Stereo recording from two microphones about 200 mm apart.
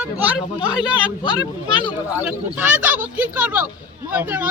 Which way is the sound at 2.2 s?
10° right (ahead or behind).